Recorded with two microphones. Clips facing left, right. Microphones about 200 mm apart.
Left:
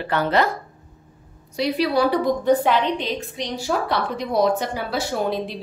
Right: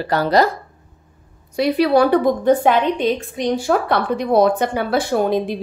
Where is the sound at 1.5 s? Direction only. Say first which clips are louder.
Right 6 dB; 55° right (ahead or behind).